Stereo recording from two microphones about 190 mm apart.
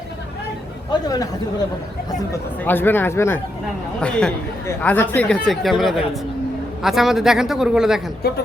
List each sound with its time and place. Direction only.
1.0 s speech: 20° left (ahead or behind)
2.6 s speech: 10° left (ahead or behind)
8.2 s a woman's voice: 55° left (ahead or behind)